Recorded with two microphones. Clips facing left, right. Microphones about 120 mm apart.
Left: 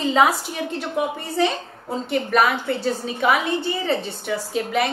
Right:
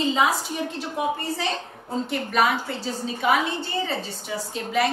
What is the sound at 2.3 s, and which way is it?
A woman's voice, 55° left (ahead or behind).